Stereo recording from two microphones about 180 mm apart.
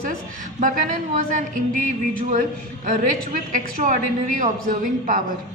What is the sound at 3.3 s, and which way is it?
A woman's voice, 50° right (ahead or behind).